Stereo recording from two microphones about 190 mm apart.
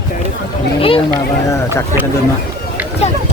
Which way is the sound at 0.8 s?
30° left (ahead or behind).